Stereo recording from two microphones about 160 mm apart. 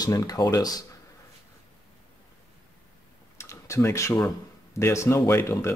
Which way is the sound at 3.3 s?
20° left (ahead or behind).